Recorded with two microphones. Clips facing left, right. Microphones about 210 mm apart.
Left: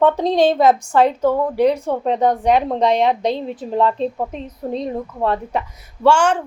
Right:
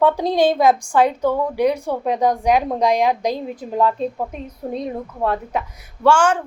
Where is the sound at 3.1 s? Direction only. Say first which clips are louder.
Left 2 dB; 25° left (ahead or behind).